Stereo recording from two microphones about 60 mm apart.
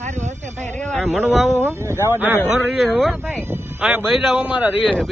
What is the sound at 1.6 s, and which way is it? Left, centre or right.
Speech, right.